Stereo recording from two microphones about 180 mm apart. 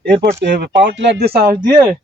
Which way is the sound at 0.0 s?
65° right (ahead or behind).